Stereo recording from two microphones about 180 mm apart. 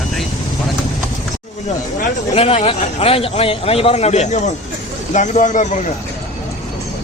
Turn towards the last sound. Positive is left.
turn(degrees=45)  # may be behind; listen again after turning